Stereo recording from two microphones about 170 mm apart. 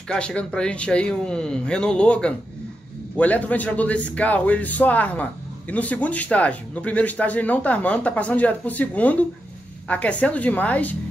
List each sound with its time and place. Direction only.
0.1 s speech: 5° left (ahead or behind)